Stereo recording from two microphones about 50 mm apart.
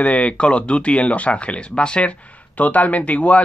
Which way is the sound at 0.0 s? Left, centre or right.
Left.